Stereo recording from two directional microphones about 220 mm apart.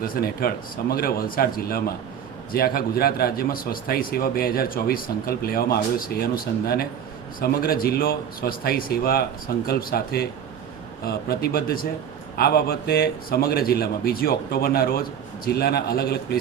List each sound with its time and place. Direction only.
0.1 s a man's voice: 45° left (ahead or behind)